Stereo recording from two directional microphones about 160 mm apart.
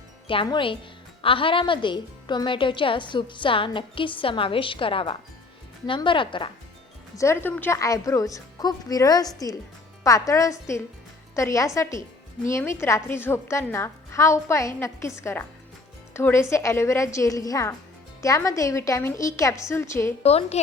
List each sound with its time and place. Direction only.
0.3 s a woman's voice: 35° left (ahead or behind)
7.2 s a woman's voice: 15° left (ahead or behind)
20.2 s a woman's voice: 40° left (ahead or behind)